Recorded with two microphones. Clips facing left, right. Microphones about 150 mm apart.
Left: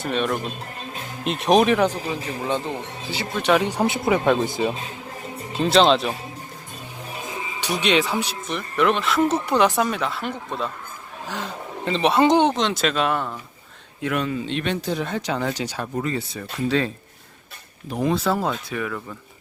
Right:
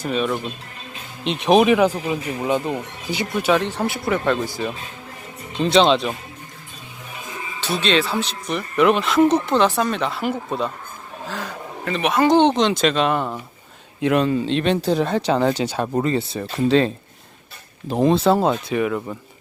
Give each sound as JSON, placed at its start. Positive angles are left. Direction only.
{"t": 0.0, "sound": "speech", "side_deg": 0}
{"t": 2.4, "sound": "speech", "side_deg": -15}
{"t": 3.6, "sound": "speech", "side_deg": 15}
{"t": 5.5, "sound": "speech", "side_deg": 5}
{"t": 7.6, "sound": "speech", "side_deg": 15}
{"t": 8.4, "sound": "speech", "side_deg": 0}
{"t": 11.9, "sound": "speech", "side_deg": 25}
{"t": 12.4, "sound": "speech", "side_deg": 5}
{"t": 14.0, "sound": "speech", "side_deg": -25}